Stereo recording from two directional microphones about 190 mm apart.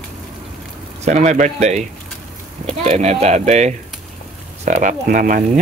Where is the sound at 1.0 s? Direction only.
40° right (ahead or behind).